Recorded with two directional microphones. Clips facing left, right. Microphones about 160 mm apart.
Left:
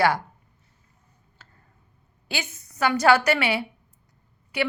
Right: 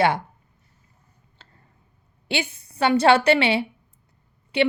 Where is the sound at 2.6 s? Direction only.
30° right (ahead or behind).